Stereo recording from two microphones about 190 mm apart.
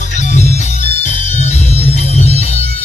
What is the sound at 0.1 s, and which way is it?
Music, 40° left (ahead or behind).